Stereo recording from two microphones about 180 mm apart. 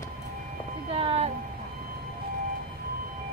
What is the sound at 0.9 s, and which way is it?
Vehicle, 35° right (ahead or behind).